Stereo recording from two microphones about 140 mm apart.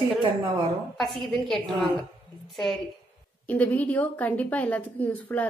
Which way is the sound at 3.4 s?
10° left (ahead or behind).